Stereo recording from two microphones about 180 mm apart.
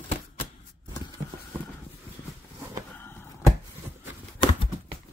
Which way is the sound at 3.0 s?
10° left (ahead or behind).